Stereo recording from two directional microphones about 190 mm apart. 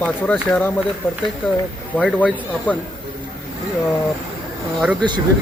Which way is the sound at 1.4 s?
5° left (ahead or behind).